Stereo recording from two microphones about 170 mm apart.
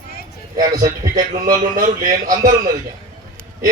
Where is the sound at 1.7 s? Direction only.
55° right (ahead or behind).